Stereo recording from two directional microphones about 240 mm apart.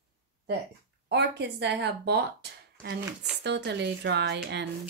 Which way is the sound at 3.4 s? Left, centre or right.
Right.